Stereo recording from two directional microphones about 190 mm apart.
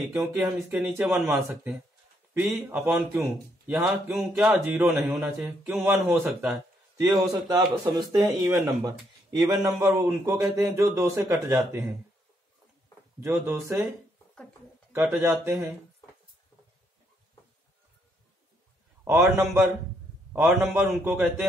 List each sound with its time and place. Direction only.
0.4 s speech: 5° right (ahead or behind)
7.1 s speech: 20° right (ahead or behind)
13.2 s speech: 15° right (ahead or behind)
14.9 s speech: 10° right (ahead or behind)
19.0 s speech: 15° right (ahead or behind)